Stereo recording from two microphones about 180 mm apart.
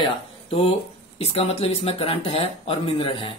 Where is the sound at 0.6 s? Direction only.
35° left (ahead or behind).